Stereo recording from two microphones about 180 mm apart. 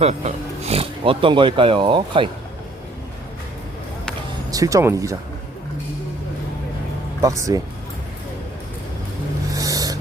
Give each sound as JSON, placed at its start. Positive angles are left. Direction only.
{"t": 0.0, "sound": "speech", "side_deg": -35}
{"t": 4.5, "sound": "speech", "side_deg": -20}
{"t": 7.2, "sound": "speech", "side_deg": -20}
{"t": 9.5, "sound": "a sound", "side_deg": -20}